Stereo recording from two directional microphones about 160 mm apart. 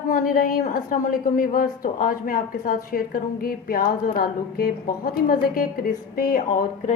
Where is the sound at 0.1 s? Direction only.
60° left (ahead or behind).